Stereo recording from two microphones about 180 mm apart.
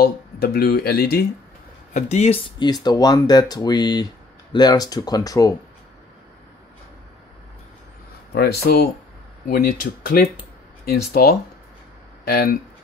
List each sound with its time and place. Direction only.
0.0 s speech: 55° left (ahead or behind)
2.0 s speech: 40° left (ahead or behind); by 5.6 s 20° left (ahead or behind)
8.4 s speech: 60° left (ahead or behind)